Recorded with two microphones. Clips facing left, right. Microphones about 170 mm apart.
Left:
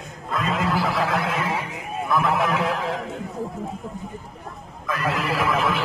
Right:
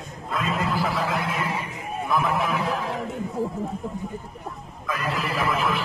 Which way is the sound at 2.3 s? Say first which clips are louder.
Left 2 dB; 90° left.